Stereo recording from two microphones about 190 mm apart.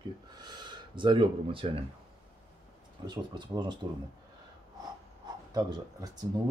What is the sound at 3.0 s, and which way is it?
Speech, 25° right (ahead or behind).